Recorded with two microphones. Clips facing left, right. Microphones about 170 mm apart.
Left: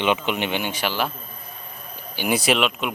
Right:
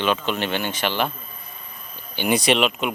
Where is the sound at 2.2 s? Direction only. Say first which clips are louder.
Right 2 dB; 5° left (ahead or behind).